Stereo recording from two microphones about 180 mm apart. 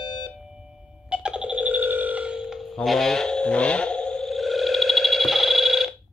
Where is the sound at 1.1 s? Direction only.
5° right (ahead or behind).